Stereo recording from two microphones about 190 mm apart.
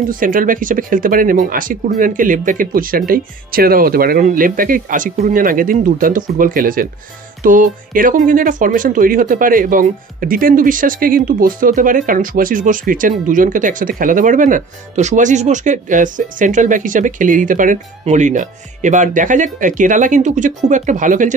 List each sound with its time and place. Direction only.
0.1 s speech: 45° right (ahead or behind)